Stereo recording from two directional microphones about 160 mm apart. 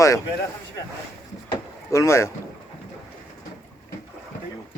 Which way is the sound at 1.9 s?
20° left (ahead or behind).